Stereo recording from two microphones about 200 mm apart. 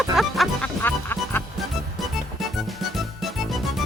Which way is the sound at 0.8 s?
10° left (ahead or behind).